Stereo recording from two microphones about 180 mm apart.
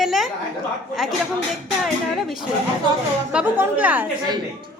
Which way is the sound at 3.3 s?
10° right (ahead or behind).